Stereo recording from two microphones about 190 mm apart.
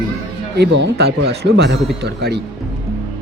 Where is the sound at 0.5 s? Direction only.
65° right (ahead or behind).